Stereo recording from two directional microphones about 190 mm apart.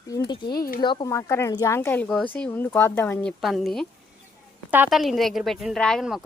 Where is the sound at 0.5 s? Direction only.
50° left (ahead or behind).